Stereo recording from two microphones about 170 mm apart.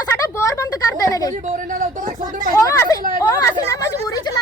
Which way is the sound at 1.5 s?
50° right (ahead or behind).